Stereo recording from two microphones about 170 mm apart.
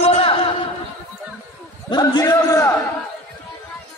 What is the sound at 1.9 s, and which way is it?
Speech, 20° left (ahead or behind).